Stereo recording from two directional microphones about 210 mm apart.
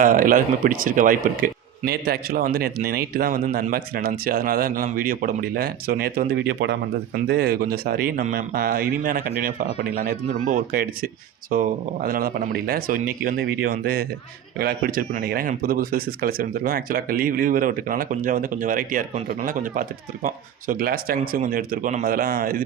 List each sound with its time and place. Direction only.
0.0 s speech: 40° right (ahead or behind)